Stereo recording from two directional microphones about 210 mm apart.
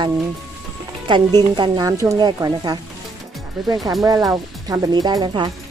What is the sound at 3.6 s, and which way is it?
Speech, centre (ahead or behind).